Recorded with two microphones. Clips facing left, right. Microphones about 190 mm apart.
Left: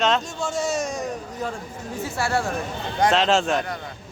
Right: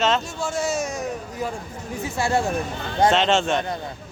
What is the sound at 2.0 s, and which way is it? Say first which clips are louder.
Speech: right 2 dB; 20° right (ahead or behind).